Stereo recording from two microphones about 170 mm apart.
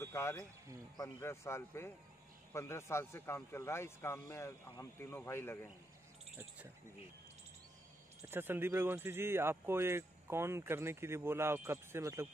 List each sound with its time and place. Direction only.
0.0 s a sound: 15° left (ahead or behind)
0.9 s a man's voice: 20° left (ahead or behind)
8.3 s speech: 15° right (ahead or behind)